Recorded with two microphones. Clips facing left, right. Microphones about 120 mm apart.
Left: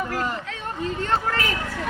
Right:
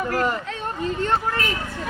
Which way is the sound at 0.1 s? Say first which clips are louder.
Right 4 dB; 65° right (ahead or behind).